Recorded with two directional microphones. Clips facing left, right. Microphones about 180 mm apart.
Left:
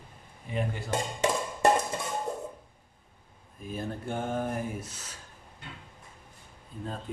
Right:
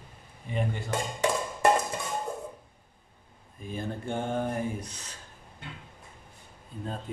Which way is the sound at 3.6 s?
Centre (ahead or behind).